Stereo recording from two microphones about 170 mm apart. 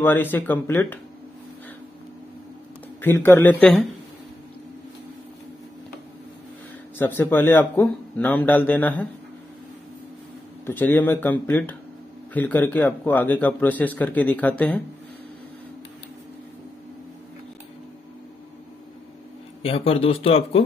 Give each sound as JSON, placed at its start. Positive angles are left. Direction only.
{"t": 0.0, "sound": "speech", "side_deg": 10}
{"t": 3.0, "sound": "speech", "side_deg": 10}
{"t": 7.0, "sound": "speech", "side_deg": 10}
{"t": 10.6, "sound": "speech", "side_deg": 10}
{"t": 19.6, "sound": "speech", "side_deg": 35}